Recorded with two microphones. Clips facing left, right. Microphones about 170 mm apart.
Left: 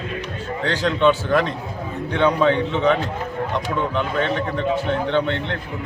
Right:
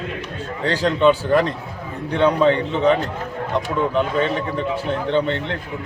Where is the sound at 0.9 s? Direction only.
5° right (ahead or behind).